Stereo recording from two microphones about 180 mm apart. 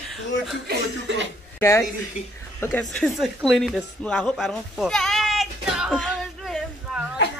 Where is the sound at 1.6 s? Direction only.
15° left (ahead or behind).